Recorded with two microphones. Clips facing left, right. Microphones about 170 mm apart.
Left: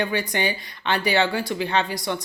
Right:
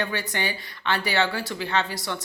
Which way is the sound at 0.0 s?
15° left (ahead or behind).